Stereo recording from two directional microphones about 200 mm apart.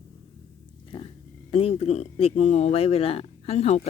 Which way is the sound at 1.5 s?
30° left (ahead or behind).